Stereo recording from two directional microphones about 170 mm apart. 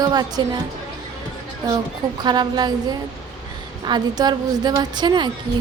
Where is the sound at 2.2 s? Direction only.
25° right (ahead or behind).